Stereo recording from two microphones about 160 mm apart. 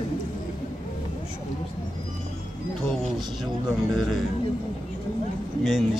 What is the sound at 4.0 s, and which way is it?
Speech, centre (ahead or behind).